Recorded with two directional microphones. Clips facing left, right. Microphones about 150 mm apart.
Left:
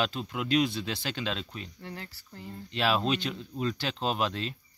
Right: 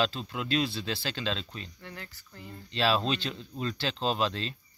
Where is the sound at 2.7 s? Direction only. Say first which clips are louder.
Even; 15° left (ahead or behind).